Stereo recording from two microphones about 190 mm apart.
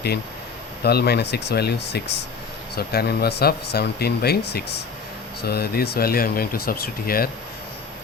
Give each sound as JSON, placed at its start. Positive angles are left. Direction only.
{"t": 0.9, "sound": "speech", "side_deg": 55}